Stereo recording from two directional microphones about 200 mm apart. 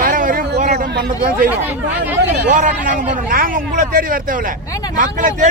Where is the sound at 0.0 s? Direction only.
45° right (ahead or behind).